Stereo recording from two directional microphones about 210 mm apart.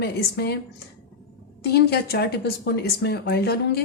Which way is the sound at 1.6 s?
50° left (ahead or behind).